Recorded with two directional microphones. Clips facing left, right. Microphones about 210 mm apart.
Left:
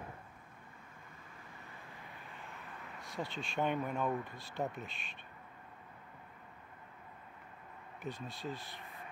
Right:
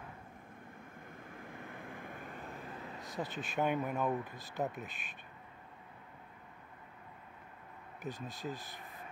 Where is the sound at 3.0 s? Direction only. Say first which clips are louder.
Right 1 dB; 20° right (ahead or behind).